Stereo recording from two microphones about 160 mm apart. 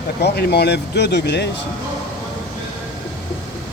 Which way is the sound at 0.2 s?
85° left.